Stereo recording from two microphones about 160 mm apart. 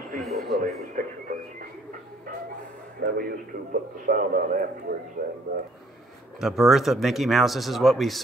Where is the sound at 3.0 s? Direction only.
70° right (ahead or behind).